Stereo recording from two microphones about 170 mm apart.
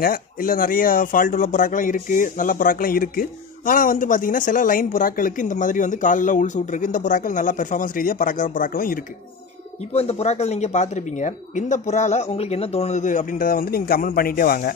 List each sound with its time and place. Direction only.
0.0 s speech: 55° left (ahead or behind)
9.8 s speech: 40° left (ahead or behind); by 14.7 s 55° left (ahead or behind)